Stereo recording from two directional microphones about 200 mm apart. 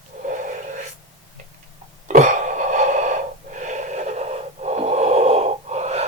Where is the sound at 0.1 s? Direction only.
40° right (ahead or behind).